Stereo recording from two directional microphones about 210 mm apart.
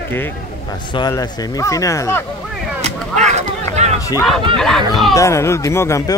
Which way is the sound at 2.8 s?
35° right (ahead or behind).